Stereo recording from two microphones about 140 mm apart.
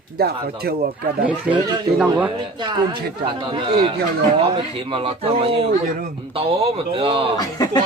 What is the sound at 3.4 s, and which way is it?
A man's voice, 35° right (ahead or behind).